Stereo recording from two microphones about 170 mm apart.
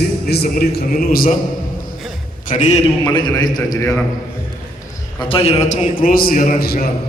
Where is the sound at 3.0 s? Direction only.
25° left (ahead or behind).